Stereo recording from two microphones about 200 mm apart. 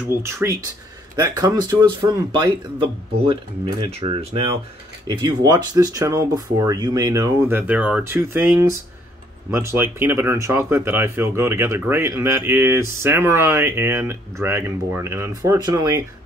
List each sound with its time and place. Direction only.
0.0 s speech: 10° right (ahead or behind)